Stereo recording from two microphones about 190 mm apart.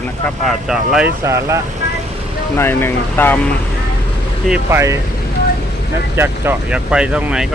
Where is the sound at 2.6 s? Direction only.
10° left (ahead or behind).